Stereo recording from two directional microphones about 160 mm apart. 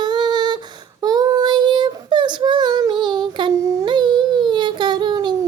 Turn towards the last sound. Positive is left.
turn(degrees=-30)  # may be behind; listen again after turning